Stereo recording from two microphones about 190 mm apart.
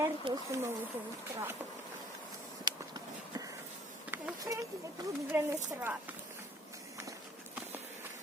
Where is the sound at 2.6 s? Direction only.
20° right (ahead or behind).